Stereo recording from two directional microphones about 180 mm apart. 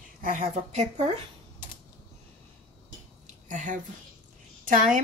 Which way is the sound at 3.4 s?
45° right (ahead or behind).